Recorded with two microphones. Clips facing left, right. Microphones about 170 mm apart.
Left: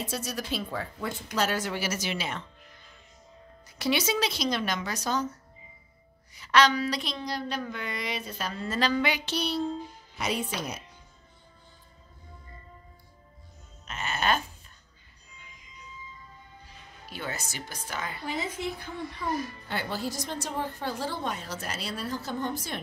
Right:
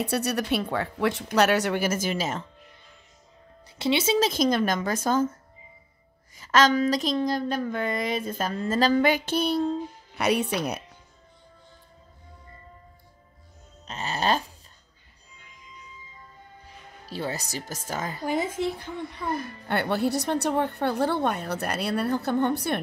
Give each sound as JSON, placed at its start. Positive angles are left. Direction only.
{"t": 0.0, "sound": "a woman's voice", "side_deg": -65}
{"t": 3.7, "sound": "a woman's voice", "side_deg": -25}
{"t": 4.2, "sound": "speech", "side_deg": -50}
{"t": 10.1, "sound": "speech", "side_deg": -65}
{"t": 13.8, "sound": "music", "side_deg": -35}
{"t": 17.0, "sound": "speech", "side_deg": -35}
{"t": 19.2, "sound": "a woman's voice", "side_deg": -55}